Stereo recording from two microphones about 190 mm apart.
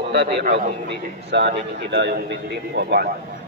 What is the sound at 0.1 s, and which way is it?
A man's voice, 65° right (ahead or behind).